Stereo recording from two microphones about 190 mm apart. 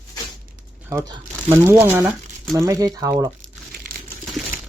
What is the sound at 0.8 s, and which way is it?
Speech, 15° right (ahead or behind).